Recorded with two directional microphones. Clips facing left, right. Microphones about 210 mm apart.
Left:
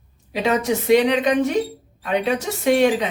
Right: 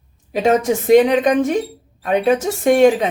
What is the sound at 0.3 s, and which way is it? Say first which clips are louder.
A woman's voice: right 5 dB; 45° right (ahead or behind).